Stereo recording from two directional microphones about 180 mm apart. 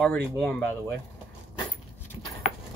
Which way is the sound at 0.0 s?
10° left (ahead or behind).